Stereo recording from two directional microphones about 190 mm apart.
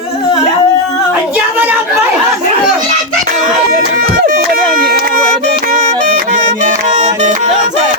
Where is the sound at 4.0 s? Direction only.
45° right (ahead or behind).